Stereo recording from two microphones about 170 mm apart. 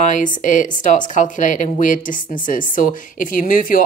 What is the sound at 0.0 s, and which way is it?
Speech, 50° left (ahead or behind).